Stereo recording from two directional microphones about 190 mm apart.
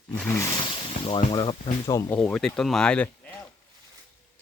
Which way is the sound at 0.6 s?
30° left (ahead or behind).